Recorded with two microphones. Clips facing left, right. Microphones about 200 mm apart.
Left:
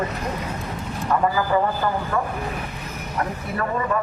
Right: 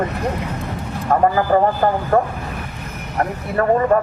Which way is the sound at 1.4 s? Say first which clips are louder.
Right 6 dB; 45° right (ahead or behind).